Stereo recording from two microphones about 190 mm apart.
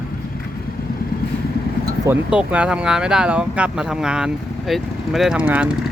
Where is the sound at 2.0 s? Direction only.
10° right (ahead or behind).